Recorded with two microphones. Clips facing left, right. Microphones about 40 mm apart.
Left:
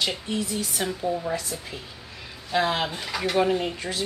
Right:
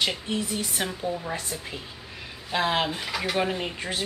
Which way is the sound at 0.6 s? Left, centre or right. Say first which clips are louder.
Left 1 dB; right.